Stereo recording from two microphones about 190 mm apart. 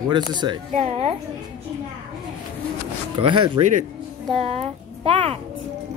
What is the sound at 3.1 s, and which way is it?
A child's voice, 25° right (ahead or behind).